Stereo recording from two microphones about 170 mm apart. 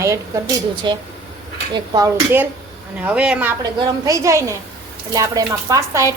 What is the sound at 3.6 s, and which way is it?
A woman's voice, 25° right (ahead or behind).